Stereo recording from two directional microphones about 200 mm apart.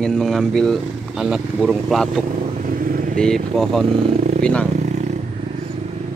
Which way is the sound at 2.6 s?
45° right (ahead or behind).